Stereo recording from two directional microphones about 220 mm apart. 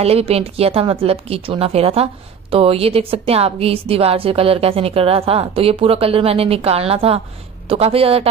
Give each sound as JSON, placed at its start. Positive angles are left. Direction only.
{"t": 0.0, "sound": "a woman's voice", "side_deg": -25}